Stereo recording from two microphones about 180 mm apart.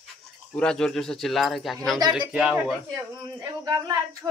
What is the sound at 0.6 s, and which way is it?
Speech, 5° left (ahead or behind).